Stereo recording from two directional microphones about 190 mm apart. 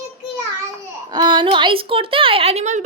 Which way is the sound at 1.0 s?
20° right (ahead or behind).